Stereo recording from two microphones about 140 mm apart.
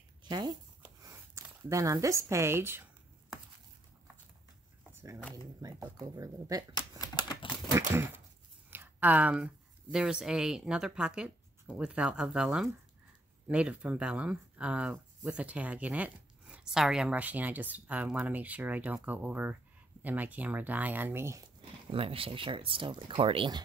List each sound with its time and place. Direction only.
0.2 s speech: 30° right (ahead or behind)
5.3 s speech: 30° right (ahead or behind)
7.0 s typewriter: 25° right (ahead or behind)
7.9 s speech: 15° right (ahead or behind)
21.9 s speech: 40° right (ahead or behind)